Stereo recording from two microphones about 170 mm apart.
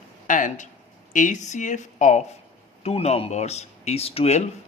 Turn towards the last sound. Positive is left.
turn(degrees=35)  # may be behind; listen again after turning